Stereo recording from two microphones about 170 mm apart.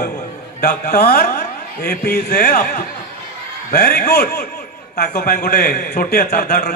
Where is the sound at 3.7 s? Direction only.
60° left (ahead or behind).